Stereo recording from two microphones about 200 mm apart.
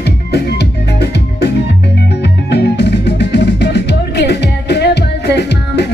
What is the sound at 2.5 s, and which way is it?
Music, 60° left (ahead or behind).